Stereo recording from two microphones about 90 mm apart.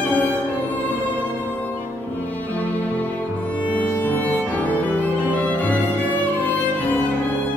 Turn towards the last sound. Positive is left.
turn(degrees=20)  # may be behind; listen again after turning